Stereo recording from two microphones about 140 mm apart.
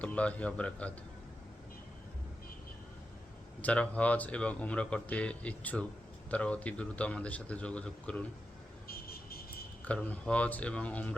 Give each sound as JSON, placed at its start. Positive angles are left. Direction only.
{"t": 0.0, "sound": "speech", "side_deg": 10}
{"t": 3.6, "sound": "speech", "side_deg": 10}
{"t": 8.9, "sound": "vehicle", "side_deg": 90}
{"t": 9.8, "sound": "speech", "side_deg": 10}